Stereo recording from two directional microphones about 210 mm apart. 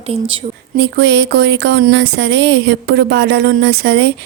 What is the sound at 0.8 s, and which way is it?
A woman's voice, 55° right (ahead or behind).